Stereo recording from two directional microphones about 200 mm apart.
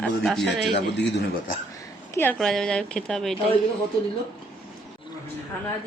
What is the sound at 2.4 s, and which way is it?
Speech, centre (ahead or behind).